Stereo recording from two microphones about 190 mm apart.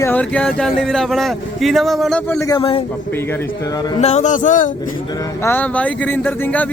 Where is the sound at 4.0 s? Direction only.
35° left (ahead or behind).